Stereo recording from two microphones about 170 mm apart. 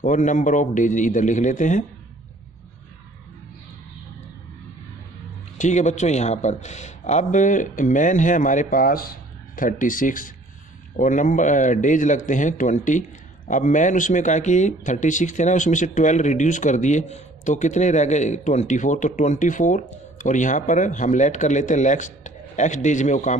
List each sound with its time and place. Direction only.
0.0 s speech: 45° left (ahead or behind)
5.6 s speech: 45° left (ahead or behind)